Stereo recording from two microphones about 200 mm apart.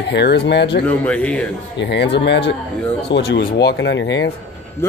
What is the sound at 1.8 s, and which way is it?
Speech, 60° left (ahead or behind).